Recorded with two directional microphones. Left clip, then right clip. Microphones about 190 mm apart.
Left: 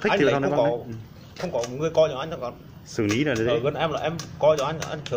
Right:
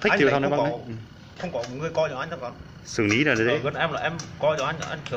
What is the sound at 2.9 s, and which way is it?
Speech, 5° left (ahead or behind).